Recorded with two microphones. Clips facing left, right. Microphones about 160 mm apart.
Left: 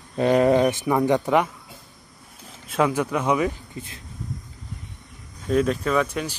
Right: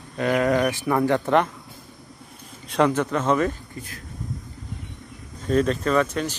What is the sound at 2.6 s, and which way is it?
Speech, 5° left (ahead or behind).